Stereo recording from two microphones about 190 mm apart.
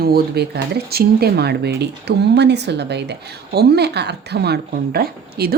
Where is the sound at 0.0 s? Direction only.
55° right (ahead or behind).